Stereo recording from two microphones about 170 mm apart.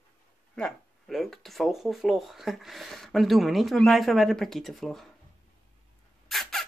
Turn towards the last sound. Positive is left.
turn(degrees=0)  # may be behind; listen again after turning